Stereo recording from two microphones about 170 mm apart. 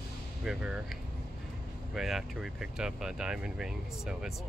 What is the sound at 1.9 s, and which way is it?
Speech, centre (ahead or behind).